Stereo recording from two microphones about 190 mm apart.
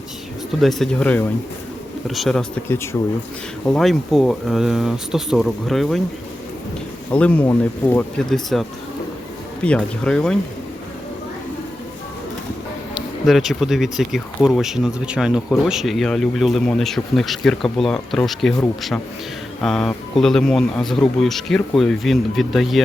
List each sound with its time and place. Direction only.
0.6 s speech: centre (ahead or behind)
3.7 s speech: centre (ahead or behind)
7.1 s speech: 5° left (ahead or behind)
9.6 s speech: 5° left (ahead or behind)
13.2 s speech: centre (ahead or behind)
19.6 s speech: 5° left (ahead or behind)